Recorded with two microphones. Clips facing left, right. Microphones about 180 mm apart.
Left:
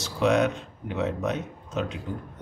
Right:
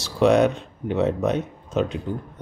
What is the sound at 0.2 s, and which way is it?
Speech, 35° right (ahead or behind).